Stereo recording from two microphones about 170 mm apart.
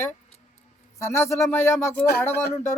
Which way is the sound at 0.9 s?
15° left (ahead or behind).